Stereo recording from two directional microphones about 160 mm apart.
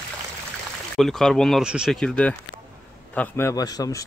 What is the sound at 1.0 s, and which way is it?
Speech, 5° left (ahead or behind).